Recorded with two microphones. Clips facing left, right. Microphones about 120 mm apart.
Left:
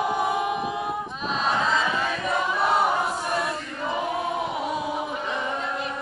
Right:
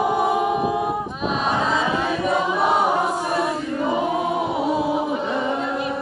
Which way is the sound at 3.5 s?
15° right (ahead or behind).